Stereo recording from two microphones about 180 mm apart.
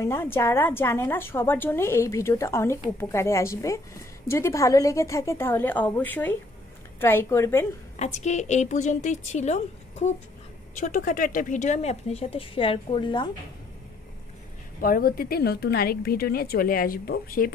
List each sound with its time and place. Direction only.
0.0 s a woman's voice: 15° left (ahead or behind)
8.0 s a woman's voice: 40° left (ahead or behind)
14.8 s speech: 55° left (ahead or behind)